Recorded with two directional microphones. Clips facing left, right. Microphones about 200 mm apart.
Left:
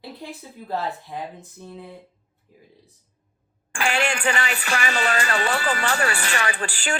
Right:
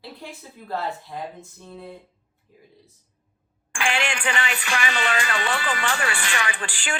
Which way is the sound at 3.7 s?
40° left (ahead or behind).